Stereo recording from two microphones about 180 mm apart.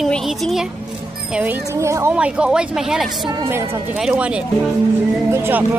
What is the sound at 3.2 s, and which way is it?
A woman's voice, 20° right (ahead or behind).